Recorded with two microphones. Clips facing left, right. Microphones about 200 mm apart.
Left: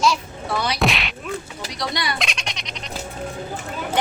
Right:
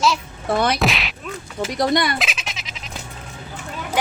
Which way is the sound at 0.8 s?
Centre (ahead or behind).